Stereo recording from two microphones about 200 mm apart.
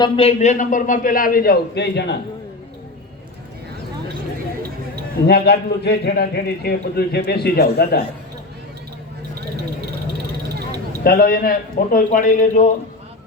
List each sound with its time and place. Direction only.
0.0 s a man's voice: 30° left (ahead or behind); by 2.1 s 55° left (ahead or behind)
5.2 s a man's voice: 55° left (ahead or behind)
11.0 s a man's voice: 45° left (ahead or behind)